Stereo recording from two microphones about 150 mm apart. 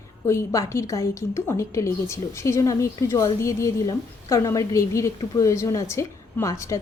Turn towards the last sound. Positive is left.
turn(degrees=20)  # may be behind; listen again after turning